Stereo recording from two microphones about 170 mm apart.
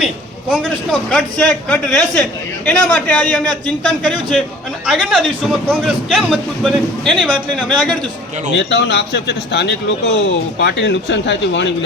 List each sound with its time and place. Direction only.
0.5 s speech: centre (ahead or behind)
8.5 s speech: 85° left